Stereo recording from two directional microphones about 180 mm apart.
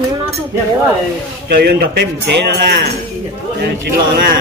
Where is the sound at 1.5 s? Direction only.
65° right (ahead or behind).